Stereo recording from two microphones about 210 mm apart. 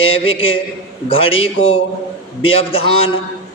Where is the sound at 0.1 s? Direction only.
25° left (ahead or behind).